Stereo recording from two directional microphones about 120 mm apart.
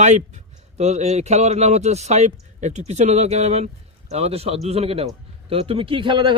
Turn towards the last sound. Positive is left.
turn(degrees=-40)  # may be behind; listen again after turning